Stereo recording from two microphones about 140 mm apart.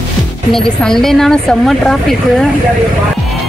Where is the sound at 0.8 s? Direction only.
5° left (ahead or behind).